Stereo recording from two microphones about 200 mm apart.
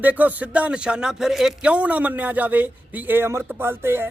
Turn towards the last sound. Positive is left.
turn(degrees=-10)  # may be behind; listen again after turning